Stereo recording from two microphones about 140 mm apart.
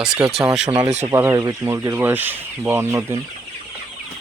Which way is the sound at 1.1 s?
20° right (ahead or behind).